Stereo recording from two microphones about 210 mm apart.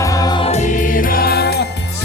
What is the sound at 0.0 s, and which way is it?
Music, 15° left (ahead or behind).